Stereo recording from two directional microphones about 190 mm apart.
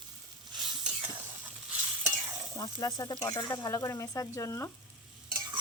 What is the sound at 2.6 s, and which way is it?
Speech, 20° left (ahead or behind).